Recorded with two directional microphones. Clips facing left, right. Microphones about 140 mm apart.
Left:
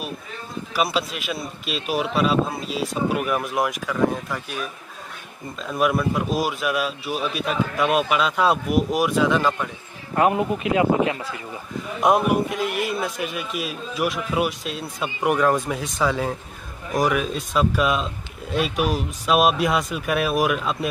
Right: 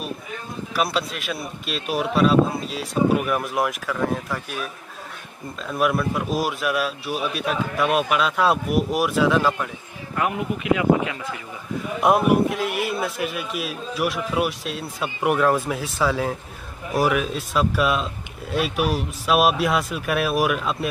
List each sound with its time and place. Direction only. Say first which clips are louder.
0.7 s a man's voice: left 1 dB; centre (ahead or behind)
5.7 s a man's voice: left 1 dB; centre (ahead or behind)
10.1 s speech: left 5 dB; 30° left (ahead or behind)
12.0 s a man's voice: right 1 dB; centre (ahead or behind)